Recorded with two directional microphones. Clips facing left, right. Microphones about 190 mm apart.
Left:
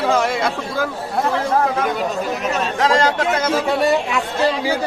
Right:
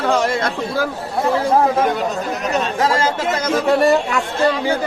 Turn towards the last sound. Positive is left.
turn(degrees=0)  # may be behind; listen again after turning